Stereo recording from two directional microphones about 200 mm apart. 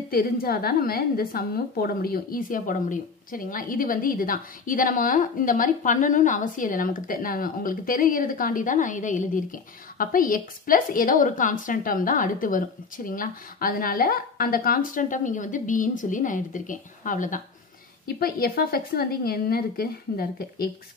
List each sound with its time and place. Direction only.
0.1 s a woman's voice: 50° left (ahead or behind)